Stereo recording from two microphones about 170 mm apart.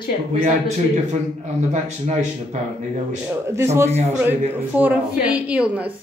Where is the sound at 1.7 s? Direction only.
40° right (ahead or behind).